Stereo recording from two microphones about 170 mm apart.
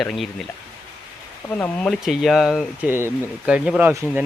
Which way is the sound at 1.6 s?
5° left (ahead or behind).